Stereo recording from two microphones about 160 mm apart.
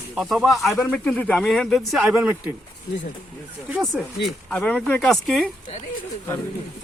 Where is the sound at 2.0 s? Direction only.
10° right (ahead or behind).